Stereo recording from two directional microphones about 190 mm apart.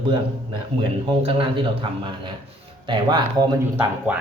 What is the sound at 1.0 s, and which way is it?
Speech, 25° right (ahead or behind).